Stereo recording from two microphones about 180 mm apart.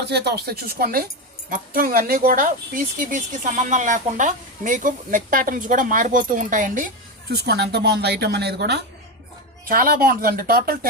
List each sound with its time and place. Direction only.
0.0 s speech: 65° right (ahead or behind); by 6.9 s 45° right (ahead or behind)
7.3 s speech: 65° right (ahead or behind)
9.6 s speech: 50° right (ahead or behind)